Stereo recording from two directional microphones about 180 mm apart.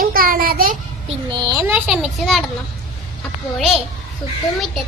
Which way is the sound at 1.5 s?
15° right (ahead or behind).